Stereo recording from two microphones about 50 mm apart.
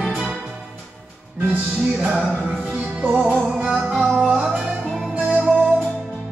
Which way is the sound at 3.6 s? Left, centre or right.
Centre.